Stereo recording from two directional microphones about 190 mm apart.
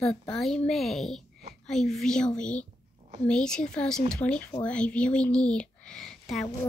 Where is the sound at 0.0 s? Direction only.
5° left (ahead or behind).